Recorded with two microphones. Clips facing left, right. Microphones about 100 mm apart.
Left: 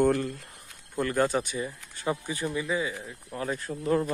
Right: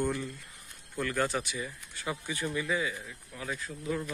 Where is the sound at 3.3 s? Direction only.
45° left (ahead or behind).